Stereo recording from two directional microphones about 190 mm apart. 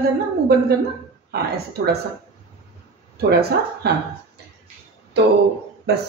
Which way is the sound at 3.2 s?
55° right (ahead or behind).